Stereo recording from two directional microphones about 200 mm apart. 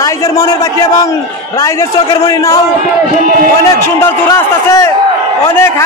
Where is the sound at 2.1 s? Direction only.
15° left (ahead or behind).